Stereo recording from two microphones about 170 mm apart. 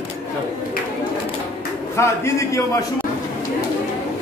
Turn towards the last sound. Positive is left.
turn(degrees=15)  # may be behind; listen again after turning